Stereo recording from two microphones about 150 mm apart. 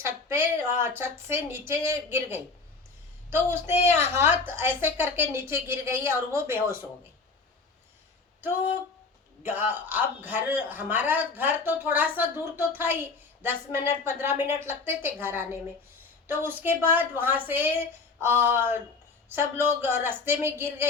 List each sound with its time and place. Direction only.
0.0 s a man's voice: 15° right (ahead or behind)
9.4 s a man's voice: 15° right (ahead or behind)